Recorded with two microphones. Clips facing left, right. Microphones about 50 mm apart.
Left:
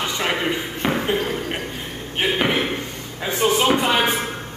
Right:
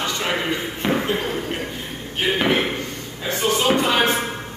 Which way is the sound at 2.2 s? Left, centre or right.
Centre.